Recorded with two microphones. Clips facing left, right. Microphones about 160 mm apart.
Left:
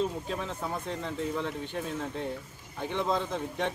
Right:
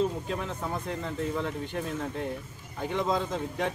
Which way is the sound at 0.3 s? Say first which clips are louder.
Right 1 dB; centre (ahead or behind).